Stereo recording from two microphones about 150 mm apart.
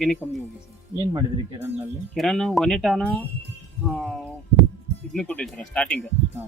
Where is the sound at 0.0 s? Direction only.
Centre (ahead or behind).